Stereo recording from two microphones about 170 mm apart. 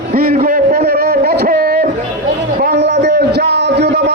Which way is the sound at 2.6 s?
70° right (ahead or behind).